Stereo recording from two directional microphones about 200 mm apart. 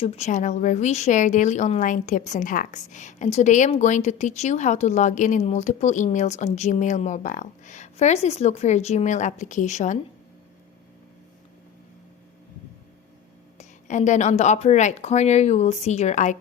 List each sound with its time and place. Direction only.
0.0 s a woman's voice: 35° left (ahead or behind)
13.6 s a woman's voice: 40° left (ahead or behind)